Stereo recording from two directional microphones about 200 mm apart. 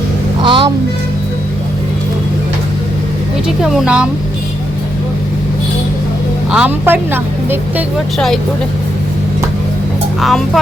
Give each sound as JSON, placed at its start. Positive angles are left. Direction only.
{"t": 0.4, "sound": "music", "side_deg": -25}
{"t": 3.6, "sound": "speech", "side_deg": -5}
{"t": 6.5, "sound": "speech", "side_deg": -5}
{"t": 10.2, "sound": "speech", "side_deg": 0}